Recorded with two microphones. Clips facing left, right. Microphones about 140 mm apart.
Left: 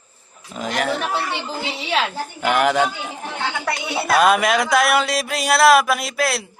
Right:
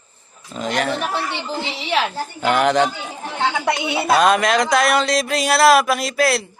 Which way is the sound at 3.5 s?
20° right (ahead or behind).